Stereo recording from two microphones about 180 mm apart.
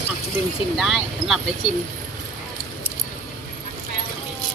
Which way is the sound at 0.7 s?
Centre (ahead or behind).